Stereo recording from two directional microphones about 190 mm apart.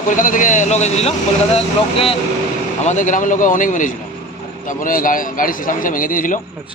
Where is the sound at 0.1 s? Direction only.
45° left (ahead or behind).